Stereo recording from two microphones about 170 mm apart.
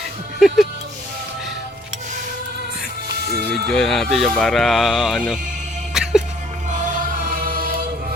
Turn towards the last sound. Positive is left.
turn(degrees=-60)  # may be behind; listen again after turning